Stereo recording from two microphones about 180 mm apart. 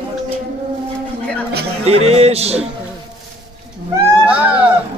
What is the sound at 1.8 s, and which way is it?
Speech, 35° right (ahead or behind).